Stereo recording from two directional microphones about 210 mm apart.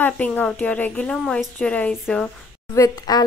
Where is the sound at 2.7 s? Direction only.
15° left (ahead or behind).